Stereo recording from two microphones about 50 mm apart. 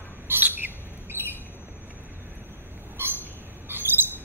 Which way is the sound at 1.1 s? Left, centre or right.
Right.